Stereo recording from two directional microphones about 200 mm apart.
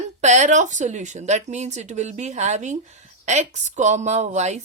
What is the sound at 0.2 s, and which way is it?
Speech, 35° right (ahead or behind).